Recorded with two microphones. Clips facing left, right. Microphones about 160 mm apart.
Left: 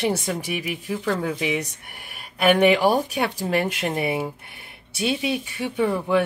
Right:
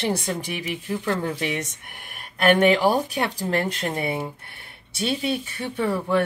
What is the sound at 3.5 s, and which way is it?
Speech, 15° left (ahead or behind).